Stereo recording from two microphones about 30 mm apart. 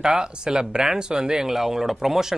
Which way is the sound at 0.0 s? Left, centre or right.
Right.